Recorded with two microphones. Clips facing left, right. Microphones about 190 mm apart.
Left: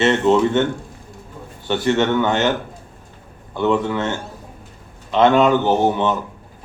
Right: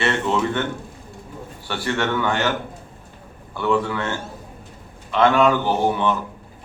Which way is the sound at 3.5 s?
20° left (ahead or behind).